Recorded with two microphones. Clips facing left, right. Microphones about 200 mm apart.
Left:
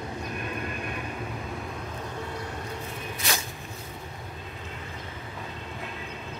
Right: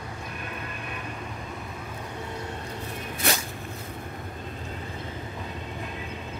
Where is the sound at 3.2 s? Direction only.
60° right (ahead or behind).